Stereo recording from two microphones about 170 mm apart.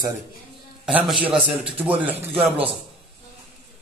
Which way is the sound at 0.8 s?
Centre (ahead or behind).